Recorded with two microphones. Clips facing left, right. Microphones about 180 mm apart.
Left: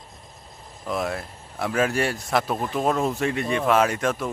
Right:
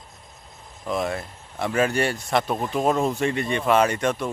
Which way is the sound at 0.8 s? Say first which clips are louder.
Right 1 dB; centre (ahead or behind).